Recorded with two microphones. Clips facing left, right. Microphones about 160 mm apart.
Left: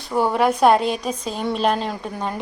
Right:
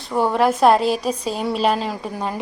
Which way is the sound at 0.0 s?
Centre (ahead or behind).